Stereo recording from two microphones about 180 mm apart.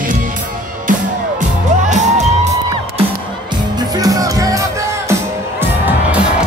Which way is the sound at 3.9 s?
20° right (ahead or behind).